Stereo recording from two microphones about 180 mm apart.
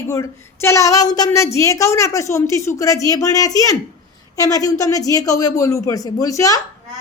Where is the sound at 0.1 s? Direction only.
15° left (ahead or behind).